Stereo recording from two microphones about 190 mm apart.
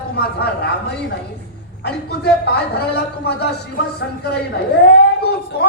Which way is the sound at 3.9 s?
60° left (ahead or behind).